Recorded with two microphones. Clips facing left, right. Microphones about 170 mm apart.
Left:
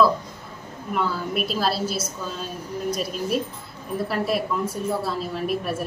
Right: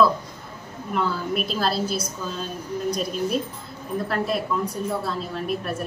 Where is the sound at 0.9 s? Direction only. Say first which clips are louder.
Right 1 dB; centre (ahead or behind).